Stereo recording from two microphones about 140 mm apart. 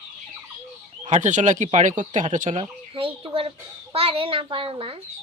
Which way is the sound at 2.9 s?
40° right (ahead or behind).